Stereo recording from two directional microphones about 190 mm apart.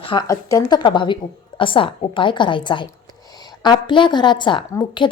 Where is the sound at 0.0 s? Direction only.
25° left (ahead or behind).